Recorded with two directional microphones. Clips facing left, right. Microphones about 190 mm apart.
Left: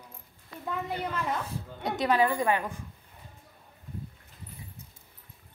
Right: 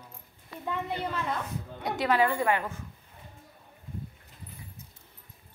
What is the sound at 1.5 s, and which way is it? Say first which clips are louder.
Speech: even; 25° left (ahead or behind).